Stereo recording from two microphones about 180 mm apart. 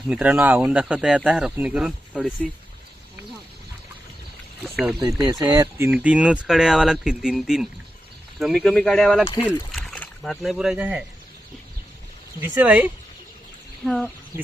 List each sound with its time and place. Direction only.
0.1 s speech: 10° right (ahead or behind)
4.6 s speech: centre (ahead or behind)
5.2 s speech: 20° right (ahead or behind); by 9.3 s centre (ahead or behind)
9.7 s rowboat: 5° left (ahead or behind)
12.4 s speech: 10° right (ahead or behind)